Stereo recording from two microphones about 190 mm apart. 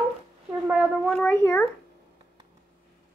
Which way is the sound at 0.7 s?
Centre (ahead or behind).